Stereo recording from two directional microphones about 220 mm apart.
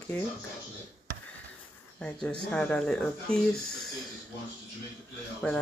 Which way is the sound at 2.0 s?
5° left (ahead or behind).